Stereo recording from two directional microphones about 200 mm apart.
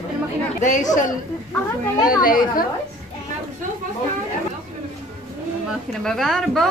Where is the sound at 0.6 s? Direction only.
40° left (ahead or behind).